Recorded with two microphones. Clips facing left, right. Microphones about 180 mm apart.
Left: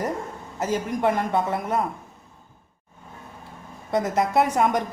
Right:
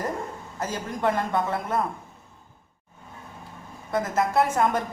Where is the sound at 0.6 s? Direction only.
20° left (ahead or behind).